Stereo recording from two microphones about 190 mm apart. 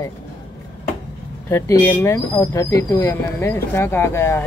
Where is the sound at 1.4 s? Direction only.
15° left (ahead or behind).